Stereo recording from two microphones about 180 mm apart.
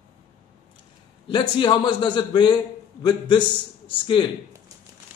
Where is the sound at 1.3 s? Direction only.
25° left (ahead or behind).